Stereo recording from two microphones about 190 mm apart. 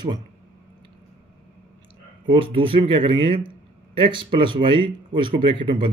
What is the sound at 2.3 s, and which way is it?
Speech, 25° right (ahead or behind).